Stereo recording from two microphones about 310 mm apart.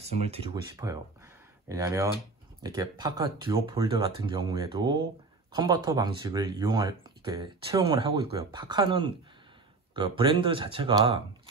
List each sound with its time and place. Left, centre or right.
0.0 s speech: centre